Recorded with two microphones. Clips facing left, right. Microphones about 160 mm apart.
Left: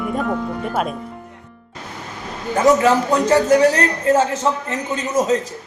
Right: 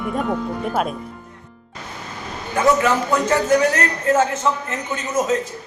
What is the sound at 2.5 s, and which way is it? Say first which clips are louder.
A man's voice: left 3 dB; 35° left (ahead or behind).